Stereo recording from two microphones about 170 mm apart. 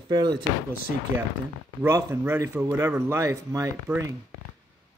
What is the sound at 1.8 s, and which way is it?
Speech, 15° right (ahead or behind).